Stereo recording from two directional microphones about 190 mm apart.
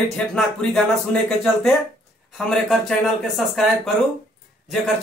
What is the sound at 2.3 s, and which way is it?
Speech, centre (ahead or behind).